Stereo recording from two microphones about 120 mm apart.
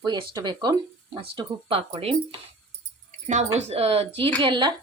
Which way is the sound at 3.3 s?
70° right (ahead or behind).